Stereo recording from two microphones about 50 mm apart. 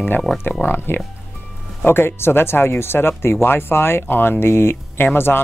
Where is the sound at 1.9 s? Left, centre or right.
Left.